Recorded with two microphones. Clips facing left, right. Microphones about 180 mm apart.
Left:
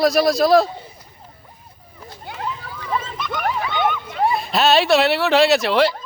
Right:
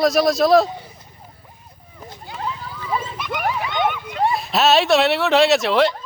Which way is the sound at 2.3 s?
55° left (ahead or behind).